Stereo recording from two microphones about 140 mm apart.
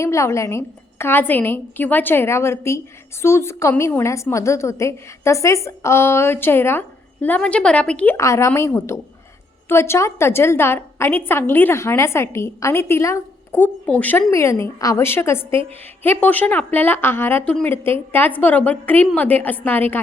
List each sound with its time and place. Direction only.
0.0 s a woman's voice: 20° left (ahead or behind)
8.1 s a woman's voice: 20° left (ahead or behind)